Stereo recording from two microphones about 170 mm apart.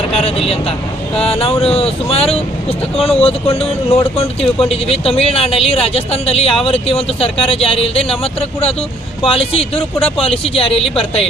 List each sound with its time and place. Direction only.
0.1 s speech: 35° left (ahead or behind)